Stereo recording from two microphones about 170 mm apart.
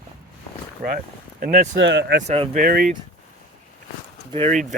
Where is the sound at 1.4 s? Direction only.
65° right (ahead or behind); by 2.2 s 90° right.